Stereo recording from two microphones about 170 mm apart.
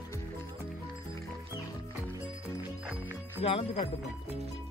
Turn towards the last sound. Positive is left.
turn(degrees=35)  # may be behind; listen again after turning